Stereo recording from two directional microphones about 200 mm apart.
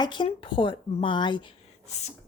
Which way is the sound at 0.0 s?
25° left (ahead or behind).